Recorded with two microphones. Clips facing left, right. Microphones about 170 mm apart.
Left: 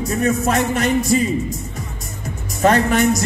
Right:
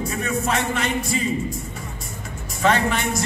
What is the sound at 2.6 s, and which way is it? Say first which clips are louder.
Speech: left 6 dB; 40° left (ahead or behind).